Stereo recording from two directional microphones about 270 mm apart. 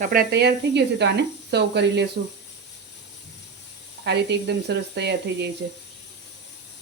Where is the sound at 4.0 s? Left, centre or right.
Right.